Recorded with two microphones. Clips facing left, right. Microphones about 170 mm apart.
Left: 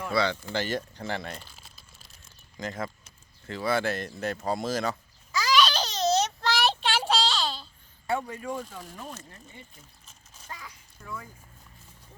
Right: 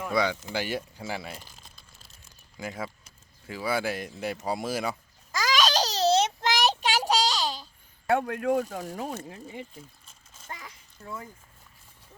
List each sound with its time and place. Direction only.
0.0 s speech: 10° right (ahead or behind)
2.6 s speech: 10° right (ahead or behind)
5.3 s babbling: 45° right (ahead or behind); by 6.7 s 15° right (ahead or behind)
6.7 s child singing: 40° right (ahead or behind)
7.1 s a sound: 15° right (ahead or behind)
8.1 s speech: 65° right (ahead or behind); by 9.6 s 90° right
10.5 s a sound: 25° right (ahead or behind)